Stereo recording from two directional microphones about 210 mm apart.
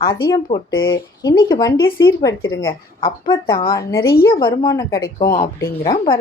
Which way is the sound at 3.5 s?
15° left (ahead or behind).